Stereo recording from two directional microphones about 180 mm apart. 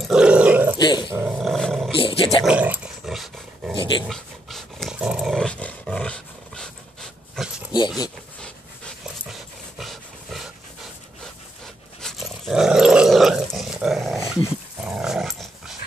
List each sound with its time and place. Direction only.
0.0 s dog: 5° right (ahead or behind)
0.7 s dog: 25° left (ahead or behind)
1.1 s dog: 10° right (ahead or behind)
1.4 s roar: centre (ahead or behind)
2.0 s roaring cats: 30° left (ahead or behind)
2.4 s dog: 10° right (ahead or behind)
12.0 s dog: centre (ahead or behind)